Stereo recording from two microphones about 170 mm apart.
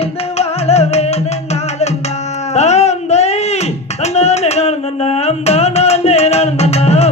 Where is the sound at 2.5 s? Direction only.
40° left (ahead or behind).